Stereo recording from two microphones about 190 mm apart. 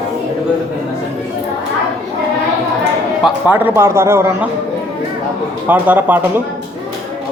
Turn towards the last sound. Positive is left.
turn(degrees=-10)  # may be behind; listen again after turning